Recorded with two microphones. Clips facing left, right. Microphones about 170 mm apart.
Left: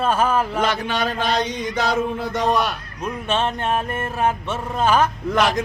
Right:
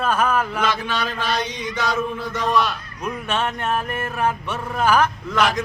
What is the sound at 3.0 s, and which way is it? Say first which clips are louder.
Music: left 2 dB; 25° left (ahead or behind).